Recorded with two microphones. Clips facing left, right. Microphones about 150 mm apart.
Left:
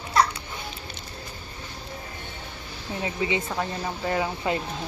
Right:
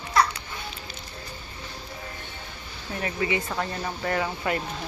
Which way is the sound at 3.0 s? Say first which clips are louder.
Even; 20° left (ahead or behind).